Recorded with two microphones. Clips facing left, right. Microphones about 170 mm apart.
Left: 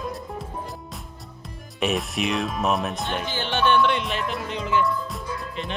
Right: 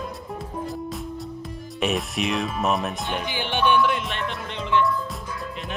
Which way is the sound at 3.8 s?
Centre (ahead or behind).